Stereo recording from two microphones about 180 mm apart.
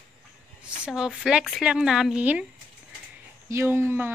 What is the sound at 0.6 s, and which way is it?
Speech, 5° right (ahead or behind).